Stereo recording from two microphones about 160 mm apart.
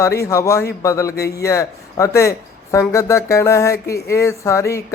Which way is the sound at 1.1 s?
80° left.